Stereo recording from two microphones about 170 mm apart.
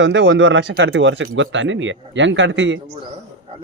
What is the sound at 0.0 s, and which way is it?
Speech, 90° right.